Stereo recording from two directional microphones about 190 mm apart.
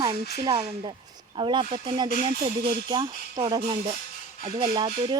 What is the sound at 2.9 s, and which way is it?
Speech, 20° right (ahead or behind).